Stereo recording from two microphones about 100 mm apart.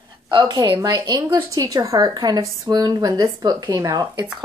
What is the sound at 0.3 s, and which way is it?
A woman's voice, 50° right (ahead or behind).